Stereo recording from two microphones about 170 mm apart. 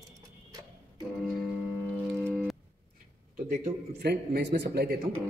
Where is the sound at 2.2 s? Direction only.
5° left (ahead or behind).